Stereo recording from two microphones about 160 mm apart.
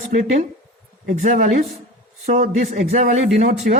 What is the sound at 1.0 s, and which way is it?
Speech, 55° right (ahead or behind).